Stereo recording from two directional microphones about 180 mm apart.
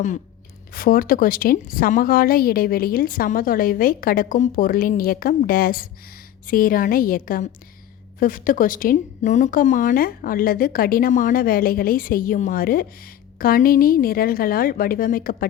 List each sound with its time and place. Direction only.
0.7 s a woman's voice: 55° left (ahead or behind)